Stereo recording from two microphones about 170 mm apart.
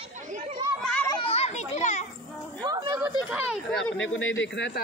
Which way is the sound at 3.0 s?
10° right (ahead or behind).